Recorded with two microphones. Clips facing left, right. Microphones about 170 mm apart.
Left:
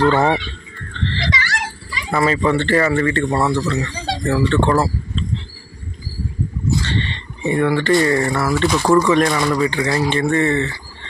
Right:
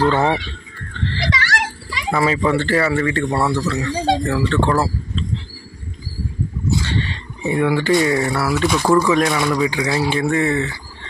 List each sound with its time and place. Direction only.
0.0 s speech: 5° right (ahead or behind)
0.9 s a sound: 10° right (ahead or behind)
1.4 s children playing: 70° right (ahead or behind)
2.0 s speech: 5° right (ahead or behind)
6.8 s speech: 10° right (ahead or behind)